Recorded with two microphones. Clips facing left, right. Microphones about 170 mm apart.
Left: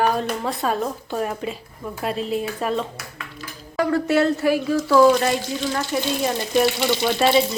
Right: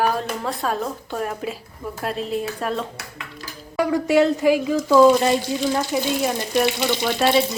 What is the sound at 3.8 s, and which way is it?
Speech, 10° right (ahead or behind).